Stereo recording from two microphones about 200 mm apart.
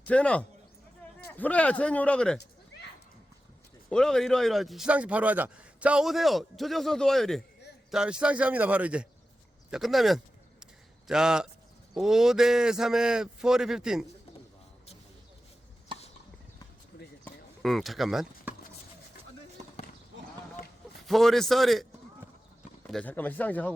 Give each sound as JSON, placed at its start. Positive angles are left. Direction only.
{"t": 0.0, "sound": "speech", "side_deg": 5}
{"t": 3.8, "sound": "speech", "side_deg": 5}
{"t": 15.9, "sound": "chopping", "side_deg": -25}
{"t": 17.2, "sound": "clip-clop", "side_deg": 0}
{"t": 21.1, "sound": "speech", "side_deg": 0}
{"t": 22.9, "sound": "speech", "side_deg": 5}